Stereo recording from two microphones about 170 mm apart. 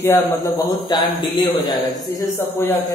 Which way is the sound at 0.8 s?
25° left (ahead or behind).